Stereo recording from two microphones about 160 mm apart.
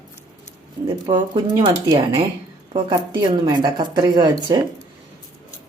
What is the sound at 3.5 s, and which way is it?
Speech, 25° right (ahead or behind).